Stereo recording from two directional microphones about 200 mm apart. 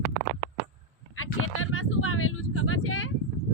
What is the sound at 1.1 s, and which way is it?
Vehicle, 90° left.